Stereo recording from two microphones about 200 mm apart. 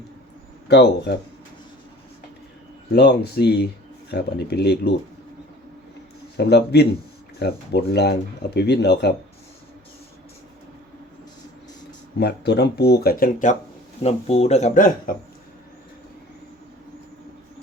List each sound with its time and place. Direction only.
0.7 s speech: 55° left (ahead or behind)
2.9 s speech: 55° left (ahead or behind)
6.3 s speech: 55° left (ahead or behind)
12.2 s speech: 55° left (ahead or behind)
14.0 s speech: 30° left (ahead or behind)